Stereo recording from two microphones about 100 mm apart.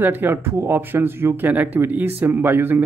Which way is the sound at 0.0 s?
20° right (ahead or behind).